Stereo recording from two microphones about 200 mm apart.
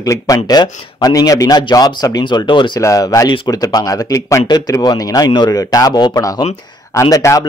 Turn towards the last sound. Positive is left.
turn(degrees=15)  # may be behind; listen again after turning